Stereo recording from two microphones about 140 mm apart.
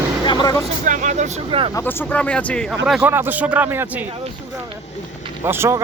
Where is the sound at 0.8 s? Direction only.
65° right (ahead or behind).